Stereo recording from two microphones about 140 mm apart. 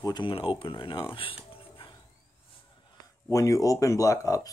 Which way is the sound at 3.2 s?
20° left (ahead or behind).